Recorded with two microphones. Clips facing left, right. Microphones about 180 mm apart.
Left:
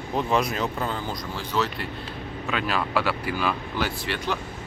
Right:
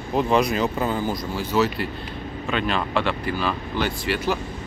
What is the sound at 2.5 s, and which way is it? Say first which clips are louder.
Speech: right 2 dB; 5° left (ahead or behind).